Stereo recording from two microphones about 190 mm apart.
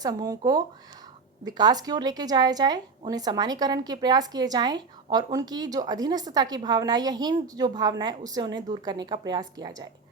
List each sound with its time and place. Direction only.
0.0 s a woman's voice: 20° right (ahead or behind)